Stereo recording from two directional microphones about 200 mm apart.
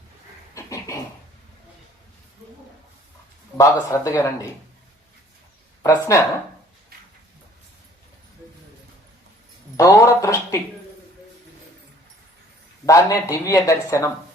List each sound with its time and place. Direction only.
0.5 s a sound: 15° left (ahead or behind)
3.6 s speech: 15° left (ahead or behind)
5.8 s speech: 15° left (ahead or behind)
9.7 s speech: 15° left (ahead or behind)
12.8 s speech: 15° left (ahead or behind)